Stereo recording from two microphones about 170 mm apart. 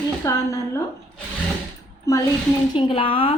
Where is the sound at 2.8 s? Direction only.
30° left (ahead or behind).